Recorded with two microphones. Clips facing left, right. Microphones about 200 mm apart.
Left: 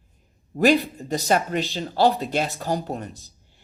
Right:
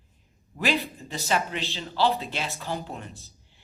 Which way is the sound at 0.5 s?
40° left (ahead or behind).